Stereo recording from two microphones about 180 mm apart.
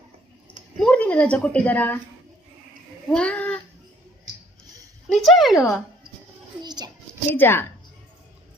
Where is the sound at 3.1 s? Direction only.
5° left (ahead or behind).